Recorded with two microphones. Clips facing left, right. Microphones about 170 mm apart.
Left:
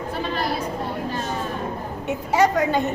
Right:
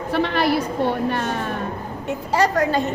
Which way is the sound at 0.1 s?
70° right (ahead or behind).